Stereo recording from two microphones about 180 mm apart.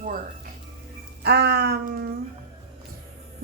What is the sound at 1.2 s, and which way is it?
Speech, 65° right (ahead or behind).